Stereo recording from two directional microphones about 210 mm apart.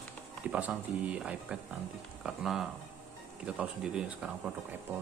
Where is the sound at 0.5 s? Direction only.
5° right (ahead or behind).